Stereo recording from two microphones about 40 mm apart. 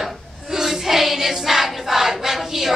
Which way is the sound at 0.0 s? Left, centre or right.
Centre.